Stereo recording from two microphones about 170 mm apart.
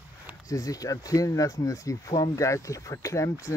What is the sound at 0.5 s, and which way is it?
Speech, 20° left (ahead or behind).